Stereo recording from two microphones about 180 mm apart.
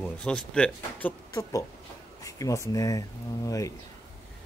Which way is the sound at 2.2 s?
20° left (ahead or behind).